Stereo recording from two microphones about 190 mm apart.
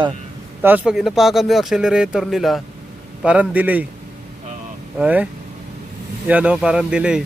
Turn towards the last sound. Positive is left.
turn(degrees=-5)  # may be behind; listen again after turning